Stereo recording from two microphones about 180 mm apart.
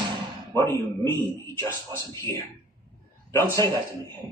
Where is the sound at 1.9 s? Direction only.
15° left (ahead or behind).